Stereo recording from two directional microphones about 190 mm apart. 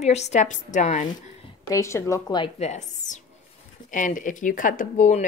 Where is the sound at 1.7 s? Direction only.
15° left (ahead or behind).